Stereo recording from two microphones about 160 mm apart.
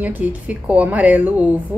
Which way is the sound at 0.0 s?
10° right (ahead or behind).